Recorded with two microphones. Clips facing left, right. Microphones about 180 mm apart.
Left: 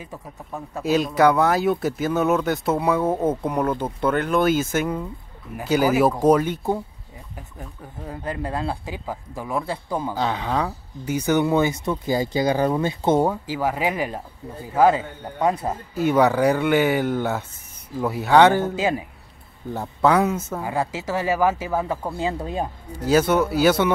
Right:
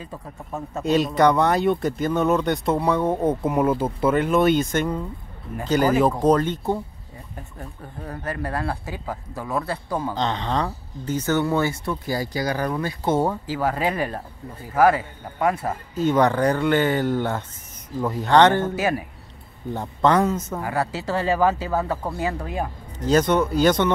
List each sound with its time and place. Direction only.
0.6 s speech: centre (ahead or behind)
8.1 s speech: 15° left (ahead or behind)
13.2 s speech: 10° left (ahead or behind)
22.9 s speech: 5° left (ahead or behind)